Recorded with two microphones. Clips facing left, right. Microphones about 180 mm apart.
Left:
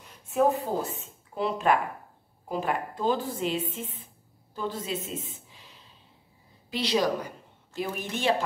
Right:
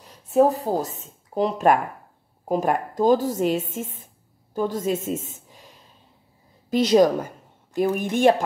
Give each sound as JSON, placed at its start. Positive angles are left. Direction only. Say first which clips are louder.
{"t": 0.3, "sound": "a woman's voice", "louder": "right 6 dB", "side_deg": -35}